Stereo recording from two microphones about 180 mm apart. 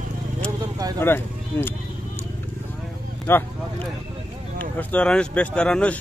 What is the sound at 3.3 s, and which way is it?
Speech, 15° left (ahead or behind).